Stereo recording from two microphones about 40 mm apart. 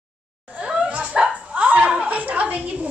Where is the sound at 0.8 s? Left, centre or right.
Right.